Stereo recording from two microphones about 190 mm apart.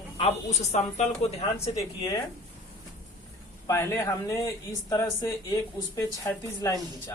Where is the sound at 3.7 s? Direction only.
15° left (ahead or behind).